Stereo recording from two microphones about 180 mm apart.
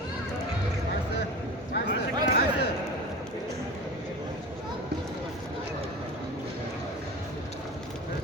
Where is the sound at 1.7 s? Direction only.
60° left (ahead or behind).